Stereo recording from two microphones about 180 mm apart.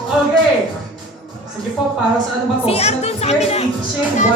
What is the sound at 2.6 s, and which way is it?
A woman's voice, 35° left (ahead or behind).